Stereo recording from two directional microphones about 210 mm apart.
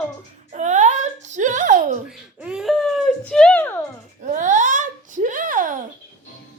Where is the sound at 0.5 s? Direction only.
35° right (ahead or behind).